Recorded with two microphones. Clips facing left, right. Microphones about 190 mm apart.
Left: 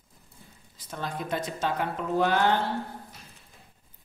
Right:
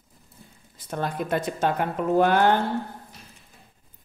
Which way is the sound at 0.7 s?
55° right (ahead or behind).